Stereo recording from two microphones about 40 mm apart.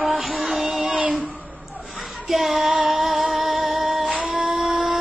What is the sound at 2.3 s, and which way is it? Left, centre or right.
Female singing, centre.